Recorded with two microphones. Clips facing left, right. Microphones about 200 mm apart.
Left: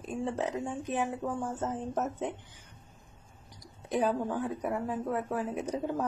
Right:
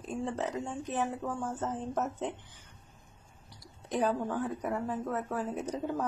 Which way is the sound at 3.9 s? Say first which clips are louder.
Left 1 dB; 15° left (ahead or behind).